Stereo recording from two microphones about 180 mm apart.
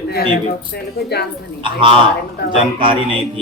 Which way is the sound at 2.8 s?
30° right (ahead or behind).